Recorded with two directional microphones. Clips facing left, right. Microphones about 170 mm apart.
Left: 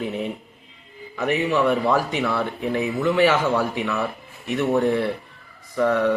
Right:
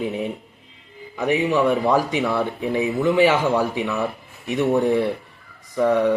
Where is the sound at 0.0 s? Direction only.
15° right (ahead or behind).